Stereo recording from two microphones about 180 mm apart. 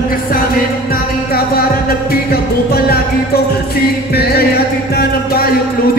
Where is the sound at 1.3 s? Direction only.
55° left (ahead or behind).